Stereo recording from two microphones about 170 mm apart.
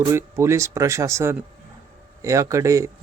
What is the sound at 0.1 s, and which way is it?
A man's voice, 15° right (ahead or behind).